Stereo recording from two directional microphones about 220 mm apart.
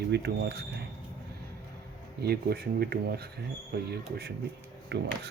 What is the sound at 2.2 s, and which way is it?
Speech, 45° right (ahead or behind).